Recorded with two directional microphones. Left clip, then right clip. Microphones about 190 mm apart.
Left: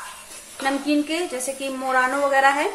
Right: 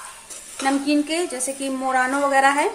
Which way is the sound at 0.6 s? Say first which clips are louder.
Right 1 dB; 15° right (ahead or behind).